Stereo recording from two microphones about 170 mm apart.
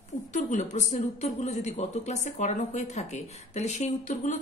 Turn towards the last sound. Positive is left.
turn(degrees=45)  # may be behind; listen again after turning